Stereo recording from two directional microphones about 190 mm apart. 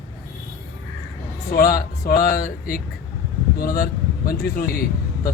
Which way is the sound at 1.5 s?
50° left (ahead or behind).